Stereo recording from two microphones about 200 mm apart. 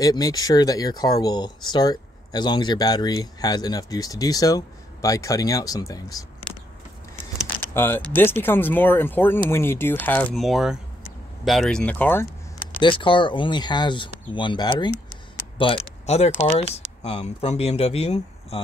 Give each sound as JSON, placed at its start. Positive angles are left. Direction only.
{"t": 0.0, "sound": "speech", "side_deg": 20}
{"t": 7.7, "sound": "speech", "side_deg": 10}
{"t": 12.8, "sound": "speech", "side_deg": 25}